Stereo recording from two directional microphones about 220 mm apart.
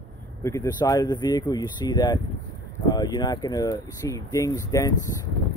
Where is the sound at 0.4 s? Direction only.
15° left (ahead or behind).